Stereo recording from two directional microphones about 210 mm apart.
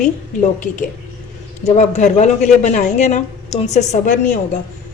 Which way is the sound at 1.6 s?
35° left (ahead or behind).